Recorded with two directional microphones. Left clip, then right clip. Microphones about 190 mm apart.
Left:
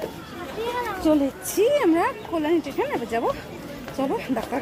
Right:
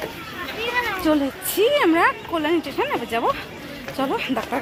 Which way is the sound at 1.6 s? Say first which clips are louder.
Right 2 dB; 5° right (ahead or behind).